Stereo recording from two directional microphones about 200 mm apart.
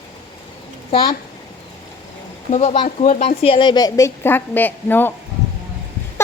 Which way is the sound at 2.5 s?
30° left (ahead or behind).